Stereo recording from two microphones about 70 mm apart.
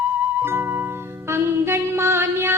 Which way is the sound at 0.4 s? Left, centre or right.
Right.